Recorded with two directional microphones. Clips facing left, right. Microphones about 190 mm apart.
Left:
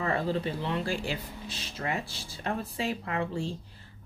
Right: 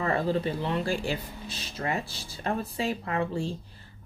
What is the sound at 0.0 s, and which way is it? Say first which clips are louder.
Speech: right 2 dB; 40° right (ahead or behind).